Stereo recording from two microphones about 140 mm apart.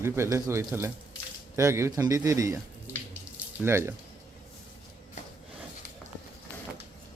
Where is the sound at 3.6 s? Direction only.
20° right (ahead or behind).